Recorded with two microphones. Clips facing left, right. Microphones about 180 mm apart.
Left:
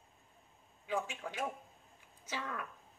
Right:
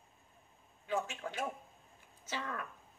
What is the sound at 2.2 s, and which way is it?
Speech, 10° left (ahead or behind).